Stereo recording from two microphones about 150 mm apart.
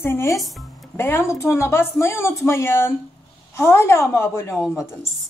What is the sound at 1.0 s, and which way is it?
Speech, 15° left (ahead or behind).